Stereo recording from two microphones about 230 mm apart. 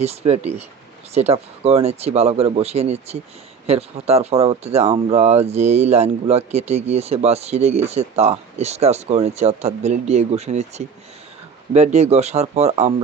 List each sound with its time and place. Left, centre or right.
0.0 s speech: right